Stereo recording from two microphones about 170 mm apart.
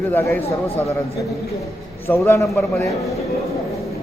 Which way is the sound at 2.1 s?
15° left (ahead or behind).